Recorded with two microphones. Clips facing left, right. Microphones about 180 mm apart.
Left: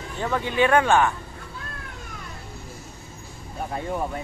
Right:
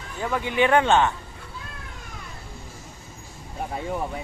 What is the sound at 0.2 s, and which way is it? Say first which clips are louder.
Speech: even; 10° right (ahead or behind).